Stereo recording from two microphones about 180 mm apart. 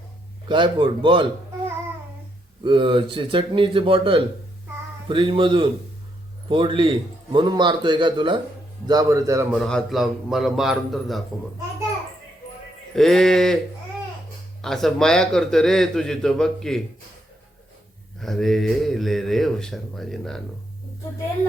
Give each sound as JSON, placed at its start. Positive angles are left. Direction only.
{"t": 0.4, "sound": "a man's voice", "side_deg": -30}
{"t": 2.6, "sound": "a man's voice", "side_deg": -30}
{"t": 9.5, "sound": "a man's voice", "side_deg": 0}
{"t": 13.0, "sound": "a man's voice", "side_deg": 0}
{"t": 14.6, "sound": "a man's voice", "side_deg": 0}
{"t": 18.2, "sound": "a man's voice", "side_deg": 0}